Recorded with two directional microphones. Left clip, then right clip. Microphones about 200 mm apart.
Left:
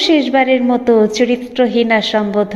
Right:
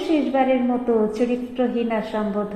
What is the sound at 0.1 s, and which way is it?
A woman's voice, 20° left (ahead or behind).